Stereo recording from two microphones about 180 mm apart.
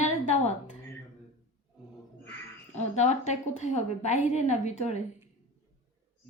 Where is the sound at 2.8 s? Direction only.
40° left (ahead or behind).